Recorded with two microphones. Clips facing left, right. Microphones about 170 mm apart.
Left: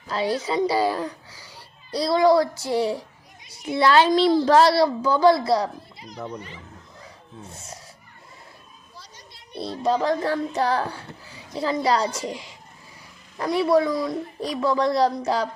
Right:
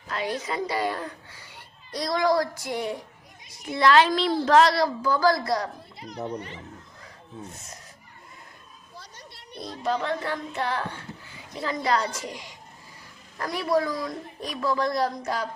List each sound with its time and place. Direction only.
0.1 s child singing: 30° left (ahead or behind)
3.8 s a woman's voice: 30° left (ahead or behind)
9.0 s children playing: 60° right (ahead or behind)
9.6 s child singing: 30° left (ahead or behind)
13.4 s child singing: 25° left (ahead or behind)